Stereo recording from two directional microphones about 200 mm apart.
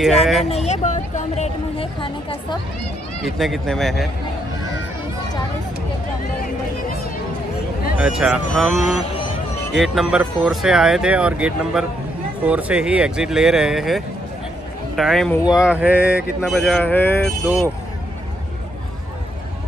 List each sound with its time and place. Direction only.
0.2 s speech: centre (ahead or behind)
0.5 s speech: 35° left (ahead or behind)
3.3 s speech: centre (ahead or behind)
7.9 s speech: 5° right (ahead or behind)
16.7 s speech: 10° left (ahead or behind)